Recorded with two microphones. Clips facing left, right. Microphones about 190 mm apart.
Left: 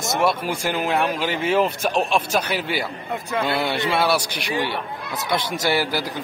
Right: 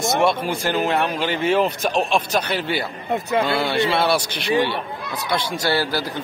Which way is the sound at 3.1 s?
25° right (ahead or behind).